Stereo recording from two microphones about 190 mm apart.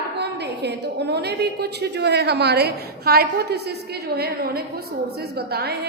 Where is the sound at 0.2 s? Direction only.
60° right (ahead or behind).